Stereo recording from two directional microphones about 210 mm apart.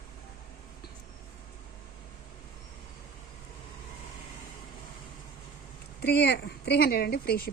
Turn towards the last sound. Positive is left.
turn(degrees=50)  # may be behind; listen again after turning